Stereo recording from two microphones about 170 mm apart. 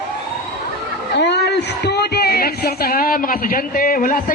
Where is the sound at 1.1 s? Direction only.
90° left.